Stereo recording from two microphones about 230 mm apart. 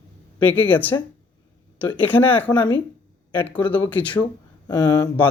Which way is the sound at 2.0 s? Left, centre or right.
Centre.